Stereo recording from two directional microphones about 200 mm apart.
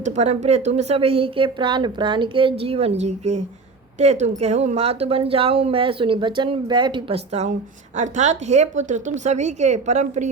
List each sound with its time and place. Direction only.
0.0 s a woman's voice: 35° right (ahead or behind)